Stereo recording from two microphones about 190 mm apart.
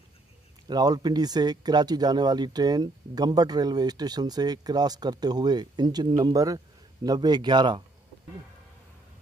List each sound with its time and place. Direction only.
0.7 s speech: 20° right (ahead or behind)